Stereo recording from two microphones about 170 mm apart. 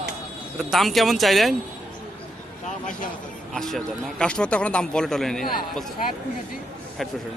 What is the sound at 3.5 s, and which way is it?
Speech, centre (ahead or behind).